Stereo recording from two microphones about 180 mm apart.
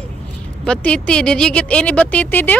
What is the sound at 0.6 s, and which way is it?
Speech, 5° left (ahead or behind).